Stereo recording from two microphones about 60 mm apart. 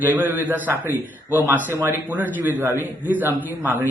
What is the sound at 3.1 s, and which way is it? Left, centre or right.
Speech, right.